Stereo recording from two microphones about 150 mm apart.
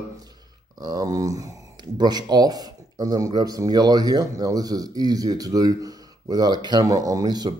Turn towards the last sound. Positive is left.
turn(degrees=-25)  # may be behind; listen again after turning